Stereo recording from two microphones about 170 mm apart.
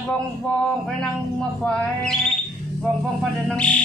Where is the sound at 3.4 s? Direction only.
5° left (ahead or behind).